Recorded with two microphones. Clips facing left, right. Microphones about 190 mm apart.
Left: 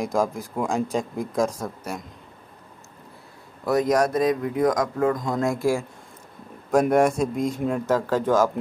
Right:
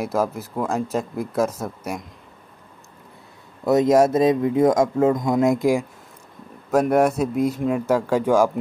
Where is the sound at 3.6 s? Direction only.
25° right (ahead or behind).